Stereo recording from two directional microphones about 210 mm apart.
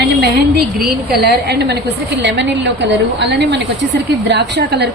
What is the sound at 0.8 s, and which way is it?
A woman's voice, 50° right (ahead or behind).